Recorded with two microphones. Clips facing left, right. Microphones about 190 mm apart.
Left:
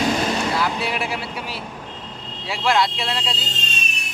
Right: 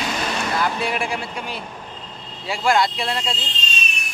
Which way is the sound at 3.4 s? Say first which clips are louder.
Even; 45° left (ahead or behind).